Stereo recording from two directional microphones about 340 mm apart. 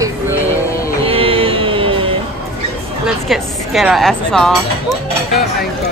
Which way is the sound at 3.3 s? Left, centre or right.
Centre.